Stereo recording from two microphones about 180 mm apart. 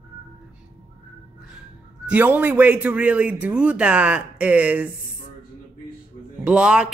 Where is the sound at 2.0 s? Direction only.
10° right (ahead or behind).